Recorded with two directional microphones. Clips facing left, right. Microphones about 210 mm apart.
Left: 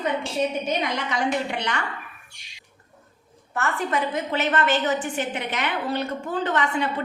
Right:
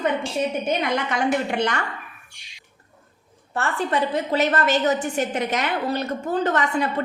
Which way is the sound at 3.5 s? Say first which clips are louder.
Right 2 dB; 30° right (ahead or behind).